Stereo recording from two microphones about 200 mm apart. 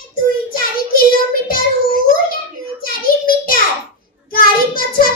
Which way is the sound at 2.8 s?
45° left (ahead or behind).